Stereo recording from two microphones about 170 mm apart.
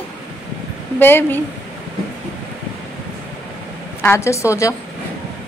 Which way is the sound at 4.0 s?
15° left (ahead or behind).